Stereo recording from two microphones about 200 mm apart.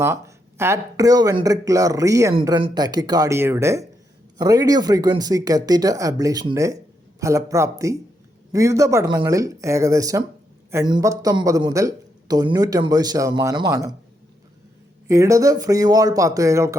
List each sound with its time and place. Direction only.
0.0 s speech: 15° right (ahead or behind)
15.0 s speech: 15° right (ahead or behind)